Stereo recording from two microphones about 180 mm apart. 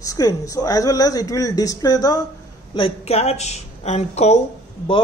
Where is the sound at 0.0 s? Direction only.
20° left (ahead or behind).